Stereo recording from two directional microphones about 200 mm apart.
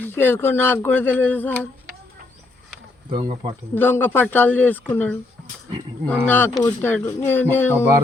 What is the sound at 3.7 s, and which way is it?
Speech, 10° left (ahead or behind).